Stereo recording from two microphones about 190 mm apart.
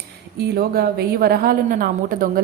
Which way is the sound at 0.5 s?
55° right (ahead or behind).